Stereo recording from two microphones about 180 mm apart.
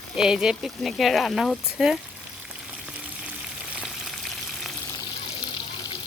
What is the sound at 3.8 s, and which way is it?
Frying, centre (ahead or behind).